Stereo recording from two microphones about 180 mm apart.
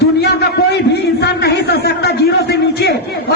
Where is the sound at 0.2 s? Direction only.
70° left (ahead or behind).